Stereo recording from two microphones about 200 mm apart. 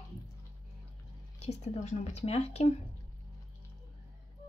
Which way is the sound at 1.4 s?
30° left (ahead or behind).